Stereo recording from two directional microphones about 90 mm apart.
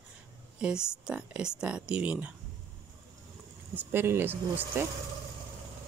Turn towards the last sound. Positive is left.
turn(degrees=-25)  # may be behind; listen again after turning